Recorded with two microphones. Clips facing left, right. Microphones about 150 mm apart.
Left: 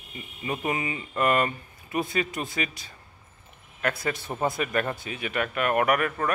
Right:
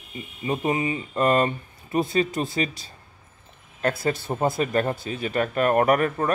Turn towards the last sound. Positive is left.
turn(degrees=-30)  # may be behind; listen again after turning